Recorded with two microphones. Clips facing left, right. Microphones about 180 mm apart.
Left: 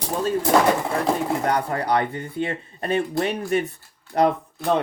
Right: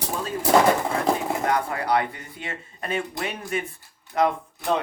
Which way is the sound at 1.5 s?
35° left (ahead or behind).